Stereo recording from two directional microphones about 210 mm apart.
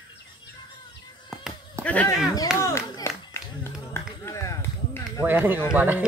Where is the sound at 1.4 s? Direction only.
5° left (ahead or behind).